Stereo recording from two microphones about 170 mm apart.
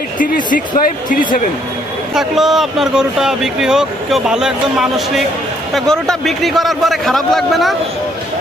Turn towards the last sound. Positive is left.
turn(degrees=0)  # may be behind; listen again after turning